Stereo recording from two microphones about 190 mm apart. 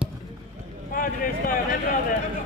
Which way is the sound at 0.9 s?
45° left (ahead or behind).